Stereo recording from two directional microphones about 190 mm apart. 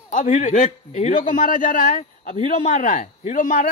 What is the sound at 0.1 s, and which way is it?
A man's voice, 40° left (ahead or behind).